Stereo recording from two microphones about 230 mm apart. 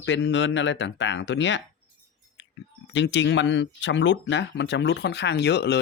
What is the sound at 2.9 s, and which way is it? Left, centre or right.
Speech, left.